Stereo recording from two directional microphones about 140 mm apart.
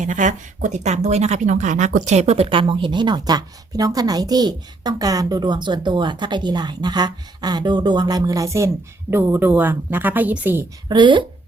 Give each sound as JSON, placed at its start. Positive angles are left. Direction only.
{"t": 0.0, "sound": "speech", "side_deg": -60}
{"t": 10.8, "sound": "speech", "side_deg": -35}